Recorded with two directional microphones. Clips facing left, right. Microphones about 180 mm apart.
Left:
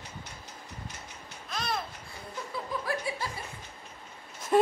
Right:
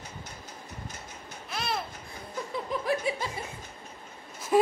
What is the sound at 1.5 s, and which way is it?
Babbling, 5° right (ahead or behind).